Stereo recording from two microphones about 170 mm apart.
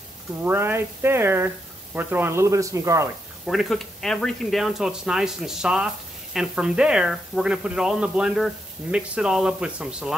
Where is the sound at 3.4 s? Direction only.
Centre (ahead or behind).